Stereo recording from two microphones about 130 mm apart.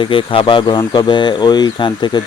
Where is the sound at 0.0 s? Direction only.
40° left (ahead or behind).